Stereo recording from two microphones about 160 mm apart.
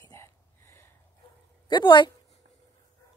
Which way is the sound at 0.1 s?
15° left (ahead or behind).